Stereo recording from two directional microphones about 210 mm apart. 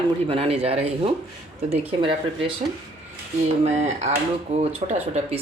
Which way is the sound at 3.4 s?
30° right (ahead or behind).